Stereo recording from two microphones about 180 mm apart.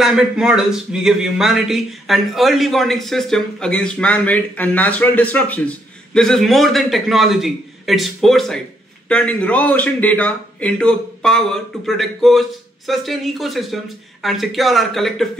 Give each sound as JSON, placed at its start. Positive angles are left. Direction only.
{"t": 0.0, "sound": "speech", "side_deg": -5}